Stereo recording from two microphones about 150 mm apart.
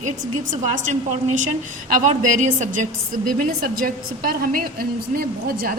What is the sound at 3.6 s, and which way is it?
A woman's voice, 70° right (ahead or behind).